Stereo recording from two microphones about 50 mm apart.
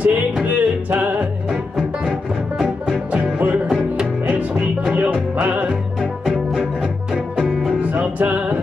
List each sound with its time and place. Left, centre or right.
0.0 s music: right
1.5 s music: centre
3.1 s music: right
7.3 s music: centre
7.8 s music: right